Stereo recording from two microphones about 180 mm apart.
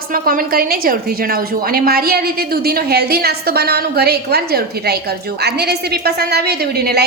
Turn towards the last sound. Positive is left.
turn(degrees=-60)  # may be behind; listen again after turning